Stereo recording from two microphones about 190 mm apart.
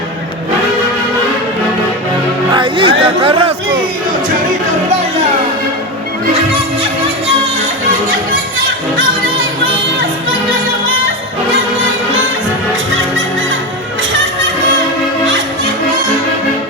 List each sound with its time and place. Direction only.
2.5 s chatter: 25° right (ahead or behind)